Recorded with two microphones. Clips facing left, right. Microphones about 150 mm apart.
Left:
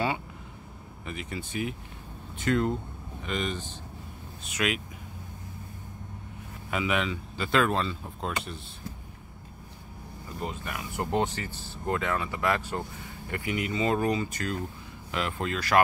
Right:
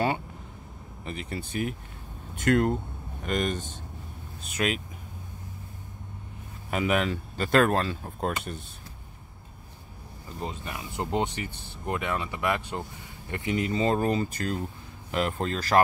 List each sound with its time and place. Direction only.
1.0 s speech: 35° right (ahead or behind)
2.5 s speech: 55° right (ahead or behind)
4.6 s speech: 35° right (ahead or behind)
6.7 s speech: 45° right (ahead or behind)
10.4 s speech: 20° right (ahead or behind)